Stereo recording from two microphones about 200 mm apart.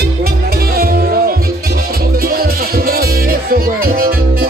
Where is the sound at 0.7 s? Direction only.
50° right (ahead or behind).